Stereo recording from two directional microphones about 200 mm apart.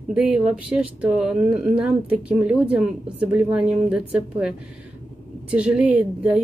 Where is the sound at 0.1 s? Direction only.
5° right (ahead or behind).